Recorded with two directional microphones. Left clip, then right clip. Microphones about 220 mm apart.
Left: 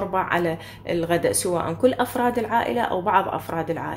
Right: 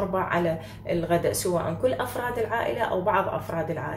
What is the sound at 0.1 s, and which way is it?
A woman's voice, 45° left (ahead or behind).